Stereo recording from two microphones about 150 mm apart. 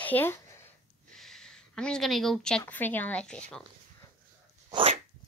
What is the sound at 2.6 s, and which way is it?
Speech, 10° left (ahead or behind).